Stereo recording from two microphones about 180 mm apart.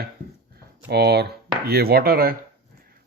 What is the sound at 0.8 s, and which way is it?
Chopping, 65° right (ahead or behind).